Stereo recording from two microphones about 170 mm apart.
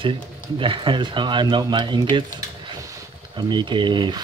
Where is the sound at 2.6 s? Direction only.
25° right (ahead or behind).